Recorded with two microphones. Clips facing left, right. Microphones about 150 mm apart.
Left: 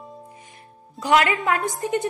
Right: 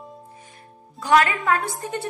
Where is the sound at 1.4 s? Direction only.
20° left (ahead or behind).